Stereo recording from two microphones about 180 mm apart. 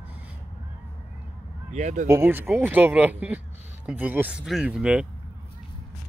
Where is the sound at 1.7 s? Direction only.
40° right (ahead or behind).